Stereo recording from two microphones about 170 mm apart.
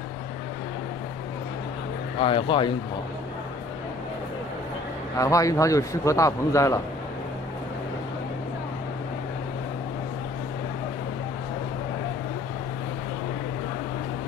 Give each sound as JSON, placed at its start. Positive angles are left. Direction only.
{"t": 2.1, "sound": "speech", "side_deg": 30}
{"t": 5.1, "sound": "a man's voice", "side_deg": 20}